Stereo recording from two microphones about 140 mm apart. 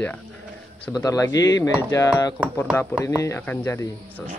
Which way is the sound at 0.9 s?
25° left (ahead or behind).